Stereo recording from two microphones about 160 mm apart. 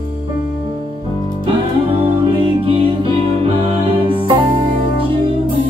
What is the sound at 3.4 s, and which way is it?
Music, 35° right (ahead or behind).